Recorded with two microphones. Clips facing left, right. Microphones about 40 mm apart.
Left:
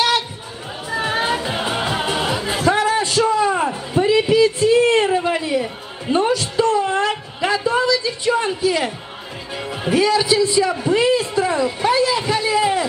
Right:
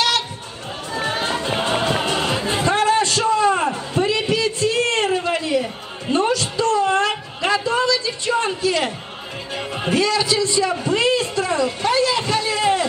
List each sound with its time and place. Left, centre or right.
0.9 s music: centre
1.4 s music: centre
2.7 s a sound: centre
6.1 s music: centre
6.5 s a sound: centre
8.5 s a man's voice: centre
9.6 s speech: centre
9.9 s a man's voice: centre
11.1 s a sound: centre